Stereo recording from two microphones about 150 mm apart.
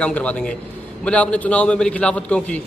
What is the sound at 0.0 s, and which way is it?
A man's voice, 10° left (ahead or behind).